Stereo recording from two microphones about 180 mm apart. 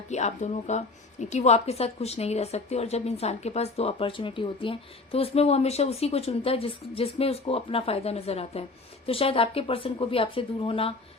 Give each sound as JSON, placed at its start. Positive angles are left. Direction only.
{"t": 0.1, "sound": "a woman's voice", "side_deg": 40}